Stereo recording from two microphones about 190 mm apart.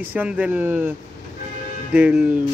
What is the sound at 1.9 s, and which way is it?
Speech, 5° right (ahead or behind).